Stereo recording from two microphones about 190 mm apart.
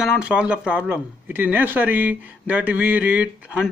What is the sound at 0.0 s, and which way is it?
Speech, 5° right (ahead or behind).